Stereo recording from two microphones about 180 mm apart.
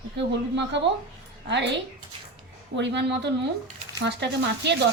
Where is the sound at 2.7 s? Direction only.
75° right (ahead or behind).